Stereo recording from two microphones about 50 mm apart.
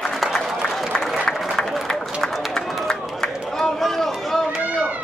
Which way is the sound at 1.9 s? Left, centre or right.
Centre.